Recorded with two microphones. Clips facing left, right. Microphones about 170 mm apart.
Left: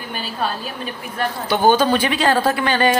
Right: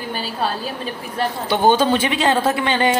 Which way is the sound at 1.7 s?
25° right (ahead or behind).